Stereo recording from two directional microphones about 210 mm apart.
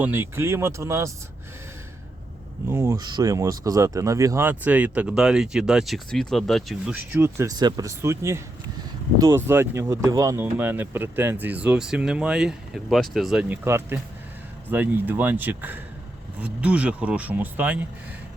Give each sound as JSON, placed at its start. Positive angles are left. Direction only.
{"t": 0.0, "sound": "speech", "side_deg": -10}
{"t": 2.6, "sound": "speech", "side_deg": -15}